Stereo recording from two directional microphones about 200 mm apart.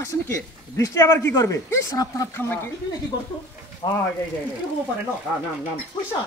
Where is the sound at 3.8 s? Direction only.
25° left (ahead or behind).